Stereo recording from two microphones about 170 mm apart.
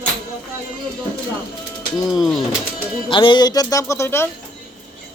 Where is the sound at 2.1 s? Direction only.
Centre (ahead or behind).